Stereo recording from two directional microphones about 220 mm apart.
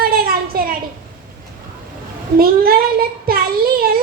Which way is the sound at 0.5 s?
40° right (ahead or behind).